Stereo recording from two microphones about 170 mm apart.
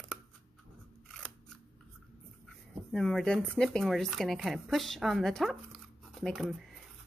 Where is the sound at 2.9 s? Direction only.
5° left (ahead or behind).